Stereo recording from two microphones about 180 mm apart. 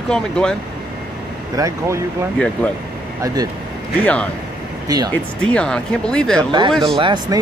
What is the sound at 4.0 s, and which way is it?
Speech, 5° left (ahead or behind).